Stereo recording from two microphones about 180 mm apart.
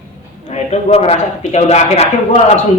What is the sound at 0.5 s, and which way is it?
Speech, 35° left (ahead or behind).